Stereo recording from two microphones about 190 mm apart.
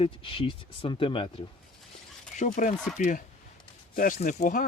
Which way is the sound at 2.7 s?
5° left (ahead or behind).